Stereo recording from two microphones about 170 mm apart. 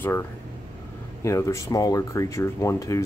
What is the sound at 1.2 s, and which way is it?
Speech, 20° left (ahead or behind).